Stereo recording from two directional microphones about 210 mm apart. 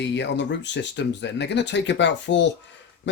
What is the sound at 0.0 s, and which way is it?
Speech, 55° left (ahead or behind).